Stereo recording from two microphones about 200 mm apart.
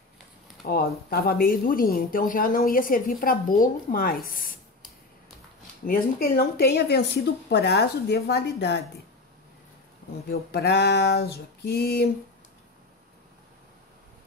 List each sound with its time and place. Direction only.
0.7 s a woman's voice: 50° left (ahead or behind)
5.9 s speech: 45° left (ahead or behind)
10.3 s a woman's voice: 55° left (ahead or behind)